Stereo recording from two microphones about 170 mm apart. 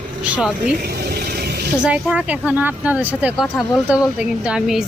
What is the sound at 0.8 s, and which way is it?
Ratchet, 65° right (ahead or behind).